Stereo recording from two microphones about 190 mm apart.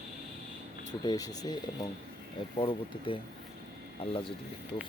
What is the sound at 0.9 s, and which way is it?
Speech, 20° left (ahead or behind).